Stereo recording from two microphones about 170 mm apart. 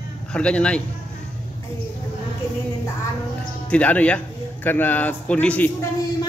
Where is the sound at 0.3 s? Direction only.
5° left (ahead or behind).